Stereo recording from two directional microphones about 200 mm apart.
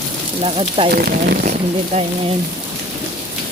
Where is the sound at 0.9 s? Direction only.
50° right (ahead or behind).